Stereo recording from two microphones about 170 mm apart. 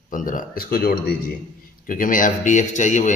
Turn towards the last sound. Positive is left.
turn(degrees=45)  # may be behind; listen again after turning